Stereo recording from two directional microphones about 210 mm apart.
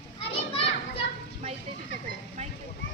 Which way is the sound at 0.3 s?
25° left (ahead or behind).